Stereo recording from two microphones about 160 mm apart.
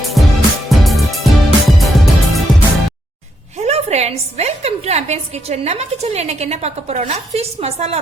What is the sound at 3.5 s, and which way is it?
A woman's voice, 45° right (ahead or behind).